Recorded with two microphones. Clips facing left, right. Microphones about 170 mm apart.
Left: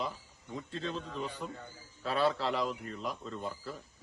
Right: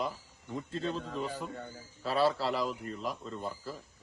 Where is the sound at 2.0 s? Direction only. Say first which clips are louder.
Right 2 dB; centre (ahead or behind).